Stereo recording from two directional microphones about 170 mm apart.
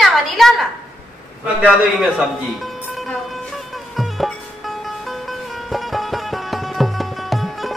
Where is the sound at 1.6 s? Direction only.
Centre (ahead or behind).